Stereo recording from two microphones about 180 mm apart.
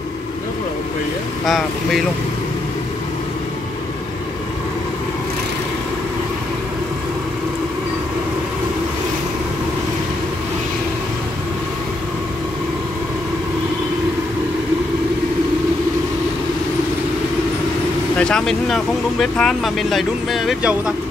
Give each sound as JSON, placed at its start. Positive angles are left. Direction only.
{"t": 1.4, "sound": "speech", "side_deg": 0}
{"t": 18.1, "sound": "speech", "side_deg": 5}